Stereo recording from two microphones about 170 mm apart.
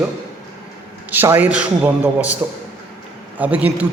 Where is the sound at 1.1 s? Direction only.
10° right (ahead or behind).